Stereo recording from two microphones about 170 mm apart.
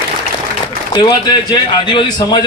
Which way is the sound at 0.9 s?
25° left (ahead or behind).